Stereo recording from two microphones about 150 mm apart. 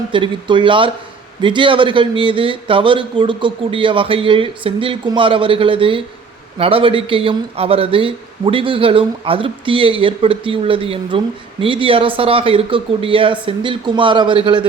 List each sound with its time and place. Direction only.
0.1 s speech: 35° right (ahead or behind)